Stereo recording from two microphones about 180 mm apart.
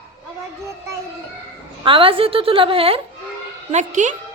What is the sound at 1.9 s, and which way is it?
A woman's voice, 30° right (ahead or behind).